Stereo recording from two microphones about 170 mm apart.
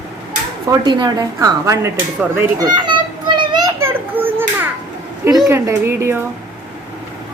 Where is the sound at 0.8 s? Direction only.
25° right (ahead or behind).